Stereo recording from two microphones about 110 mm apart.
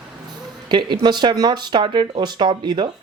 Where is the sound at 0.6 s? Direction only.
45° right (ahead or behind).